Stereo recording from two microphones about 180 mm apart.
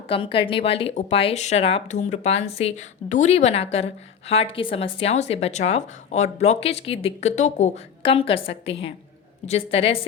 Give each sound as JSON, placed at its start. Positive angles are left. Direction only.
{"t": 0.1, "sound": "speech", "side_deg": 30}